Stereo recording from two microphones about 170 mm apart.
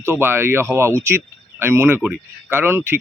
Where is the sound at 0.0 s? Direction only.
15° right (ahead or behind).